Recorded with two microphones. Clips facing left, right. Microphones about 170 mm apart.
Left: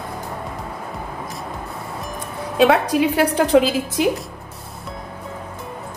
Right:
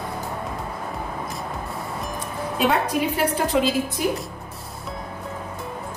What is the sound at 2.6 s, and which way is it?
A woman's voice, 85° left.